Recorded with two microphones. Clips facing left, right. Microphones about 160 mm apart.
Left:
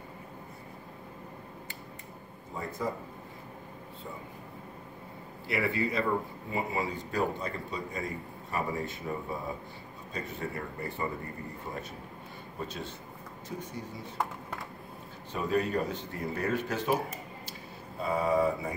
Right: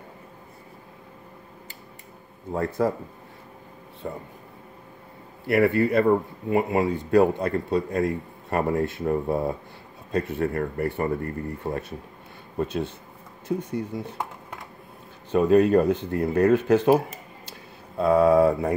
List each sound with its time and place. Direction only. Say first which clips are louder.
2.5 s a man's voice: right 11 dB; 70° right (ahead or behind)
4.0 s speech: right 10 dB; 65° right (ahead or behind)
5.5 s speech: right 11 dB; 55° right (ahead or behind)
13.9 s speech: right 10 dB; 55° right (ahead or behind)
15.3 s speech: right 12 dB; 65° right (ahead or behind)
17.5 s a sound: even; 70° right (ahead or behind)